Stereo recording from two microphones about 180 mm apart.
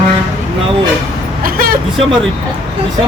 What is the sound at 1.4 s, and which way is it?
Speech, 55° right (ahead or behind).